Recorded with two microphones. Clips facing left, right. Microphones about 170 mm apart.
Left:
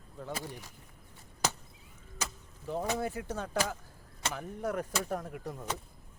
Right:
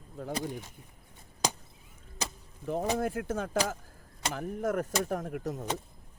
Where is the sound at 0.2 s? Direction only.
45° right (ahead or behind).